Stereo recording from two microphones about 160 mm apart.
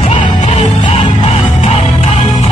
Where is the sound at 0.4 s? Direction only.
45° left (ahead or behind).